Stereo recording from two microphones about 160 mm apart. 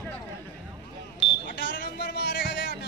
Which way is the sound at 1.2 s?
Centre (ahead or behind).